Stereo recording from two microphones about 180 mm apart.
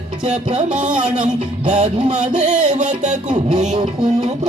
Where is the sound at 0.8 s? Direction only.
5° right (ahead or behind).